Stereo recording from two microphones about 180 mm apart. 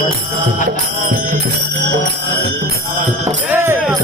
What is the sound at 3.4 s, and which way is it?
Music, 15° right (ahead or behind).